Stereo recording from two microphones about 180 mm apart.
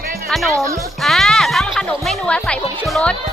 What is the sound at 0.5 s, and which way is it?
Speech, 15° right (ahead or behind).